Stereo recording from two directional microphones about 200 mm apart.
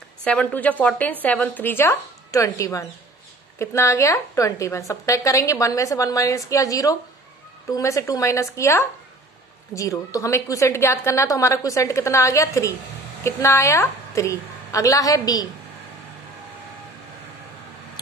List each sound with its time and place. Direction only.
0.2 s a woman's voice: 5° left (ahead or behind)